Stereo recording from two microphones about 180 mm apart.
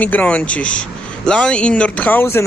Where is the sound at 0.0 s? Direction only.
10° left (ahead or behind).